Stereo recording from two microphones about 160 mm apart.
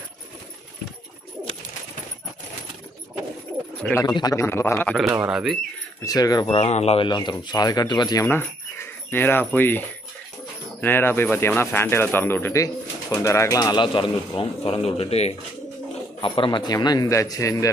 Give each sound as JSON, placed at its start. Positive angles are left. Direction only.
{"t": 3.9, "sound": "speech", "side_deg": 25}
{"t": 5.3, "sound": "speech", "side_deg": -5}
{"t": 6.0, "sound": "speech", "side_deg": 25}
{"t": 6.5, "sound": "a man's voice", "side_deg": 40}
{"t": 7.1, "sound": "speech", "side_deg": 25}
{"t": 8.3, "sound": "a man's voice", "side_deg": 15}